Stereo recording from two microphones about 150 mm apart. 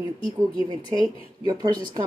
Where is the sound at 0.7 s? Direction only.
25° right (ahead or behind).